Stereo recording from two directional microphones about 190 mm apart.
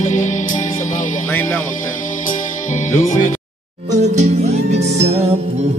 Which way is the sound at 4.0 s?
35° right (ahead or behind).